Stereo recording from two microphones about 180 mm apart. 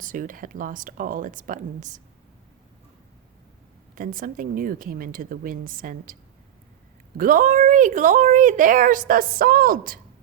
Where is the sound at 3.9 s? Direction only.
50° right (ahead or behind).